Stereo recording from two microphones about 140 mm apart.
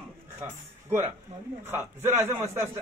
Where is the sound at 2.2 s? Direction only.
15° right (ahead or behind).